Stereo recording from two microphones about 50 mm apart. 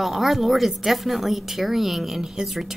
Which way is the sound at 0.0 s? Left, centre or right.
Centre.